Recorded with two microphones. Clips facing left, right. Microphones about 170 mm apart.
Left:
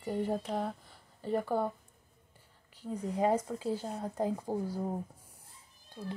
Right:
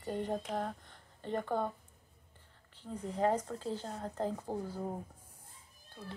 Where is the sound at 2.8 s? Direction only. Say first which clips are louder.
Left 2 dB; 10° left (ahead or behind).